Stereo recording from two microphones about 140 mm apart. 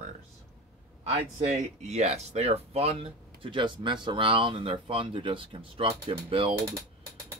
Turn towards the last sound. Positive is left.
turn(degrees=-40)  # may be behind; listen again after turning